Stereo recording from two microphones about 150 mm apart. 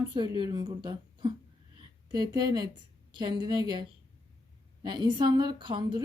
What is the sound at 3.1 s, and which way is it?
Speech, 30° right (ahead or behind).